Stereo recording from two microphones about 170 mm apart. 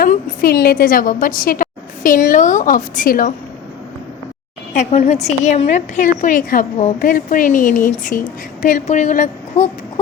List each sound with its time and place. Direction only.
0.0 s a woman's voice: 55° left (ahead or behind)
4.7 s a woman's voice: 40° left (ahead or behind)